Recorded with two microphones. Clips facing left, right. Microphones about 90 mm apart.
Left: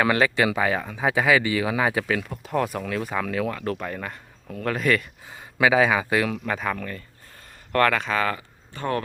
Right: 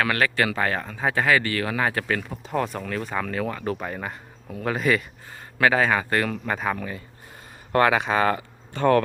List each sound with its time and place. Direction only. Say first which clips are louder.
0.0 s speech: left 2 dB; 20° left (ahead or behind); by 5.0 s 5° right (ahead or behind)
5.5 s speech: left 1 dB; 10° left (ahead or behind); by 8.1 s 15° right (ahead or behind)
8.1 s speech: right 3 dB; 30° right (ahead or behind)
8.4 s a sound: right 8 dB; 55° right (ahead or behind)